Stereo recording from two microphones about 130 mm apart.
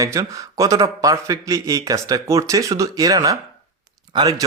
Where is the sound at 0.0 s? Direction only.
25° right (ahead or behind).